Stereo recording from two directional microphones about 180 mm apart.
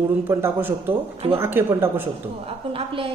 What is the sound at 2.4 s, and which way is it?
Speech, 30° right (ahead or behind).